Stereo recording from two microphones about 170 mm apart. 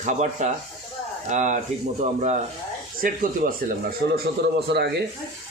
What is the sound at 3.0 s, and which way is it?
Speech, 55° right (ahead or behind).